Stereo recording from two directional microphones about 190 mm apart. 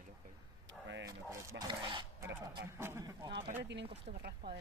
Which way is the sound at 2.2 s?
15° right (ahead or behind).